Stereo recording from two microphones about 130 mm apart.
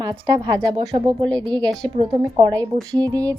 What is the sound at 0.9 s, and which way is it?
Speech, 45° right (ahead or behind).